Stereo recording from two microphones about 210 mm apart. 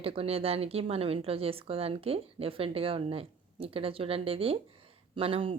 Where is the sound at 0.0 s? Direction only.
25° right (ahead or behind).